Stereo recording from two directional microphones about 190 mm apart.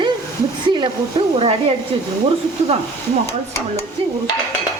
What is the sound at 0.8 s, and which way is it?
Speech, 25° right (ahead or behind).